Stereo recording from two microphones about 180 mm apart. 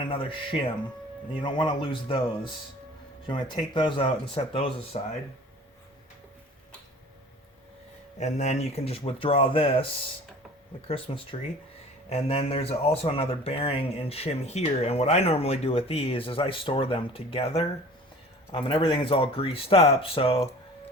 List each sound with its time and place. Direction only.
0.0 s speech: 30° left (ahead or behind)
8.2 s speech: 40° left (ahead or behind)